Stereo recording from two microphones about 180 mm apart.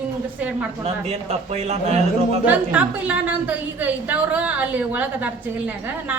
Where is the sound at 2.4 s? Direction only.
10° right (ahead or behind).